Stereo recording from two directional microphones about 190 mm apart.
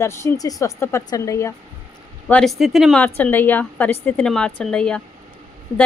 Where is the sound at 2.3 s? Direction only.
5° left (ahead or behind).